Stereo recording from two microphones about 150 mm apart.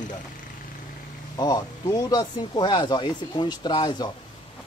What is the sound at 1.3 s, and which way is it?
Speech, 25° left (ahead or behind).